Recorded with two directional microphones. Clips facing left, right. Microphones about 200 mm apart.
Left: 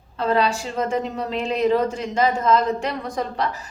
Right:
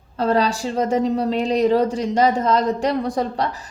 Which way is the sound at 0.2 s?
40° right (ahead or behind).